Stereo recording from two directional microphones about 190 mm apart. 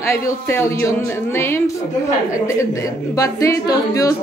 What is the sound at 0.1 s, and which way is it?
Speech, 15° left (ahead or behind).